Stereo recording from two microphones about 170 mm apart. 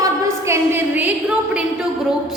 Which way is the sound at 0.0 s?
15° right (ahead or behind).